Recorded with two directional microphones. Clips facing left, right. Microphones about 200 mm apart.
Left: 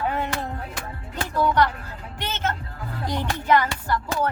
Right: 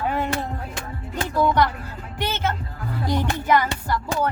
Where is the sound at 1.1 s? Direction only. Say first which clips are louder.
Right 2 dB; 10° right (ahead or behind).